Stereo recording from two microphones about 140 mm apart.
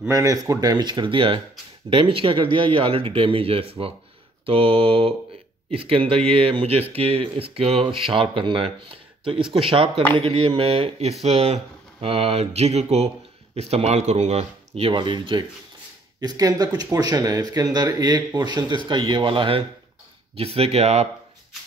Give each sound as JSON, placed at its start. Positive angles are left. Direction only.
{"t": 0.1, "sound": "speech", "side_deg": -20}